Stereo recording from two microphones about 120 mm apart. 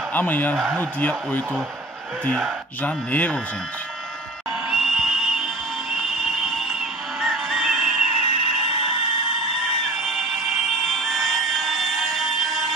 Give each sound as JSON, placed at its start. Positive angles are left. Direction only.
{"t": 0.1, "sound": "speech", "side_deg": 15}
{"t": 0.6, "sound": "speech", "side_deg": 0}
{"t": 0.9, "sound": "speech", "side_deg": 15}
{"t": 2.2, "sound": "speech", "side_deg": 5}
{"t": 4.6, "sound": "whistle", "side_deg": -5}
{"t": 8.2, "sound": "a sound", "side_deg": 55}
{"t": 9.9, "sound": "a sound", "side_deg": 0}